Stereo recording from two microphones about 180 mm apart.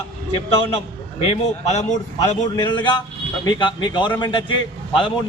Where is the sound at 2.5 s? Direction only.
25° left (ahead or behind).